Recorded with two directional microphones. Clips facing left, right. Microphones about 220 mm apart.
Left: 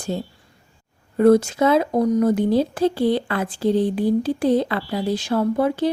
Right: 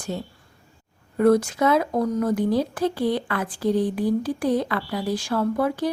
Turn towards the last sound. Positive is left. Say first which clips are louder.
# left 3 dB
turn(degrees=25)  # may be behind; listen again after turning